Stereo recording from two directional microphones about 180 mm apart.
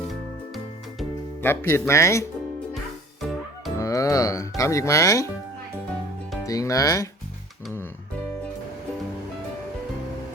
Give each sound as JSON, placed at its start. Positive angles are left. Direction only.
{"t": 0.1, "sound": "music", "side_deg": 0}
{"t": 1.4, "sound": "speech", "side_deg": 15}
{"t": 3.8, "sound": "music", "side_deg": 20}
{"t": 6.4, "sound": "speech", "side_deg": 20}